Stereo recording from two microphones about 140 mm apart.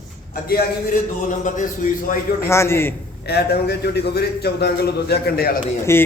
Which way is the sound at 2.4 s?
20° left (ahead or behind).